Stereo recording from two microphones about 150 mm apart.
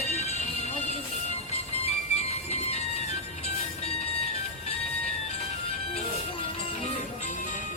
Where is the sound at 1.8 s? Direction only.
45° left (ahead or behind).